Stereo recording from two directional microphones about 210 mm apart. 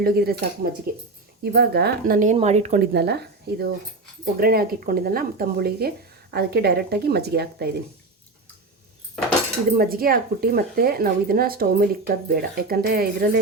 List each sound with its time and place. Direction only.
0.0 s a woman's voice: 45° right (ahead or behind)
2.9 s speech: 50° right (ahead or behind)
9.7 s speech: 45° right (ahead or behind)